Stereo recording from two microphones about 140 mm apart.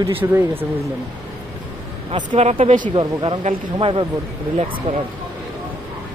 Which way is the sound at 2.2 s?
50° right (ahead or behind).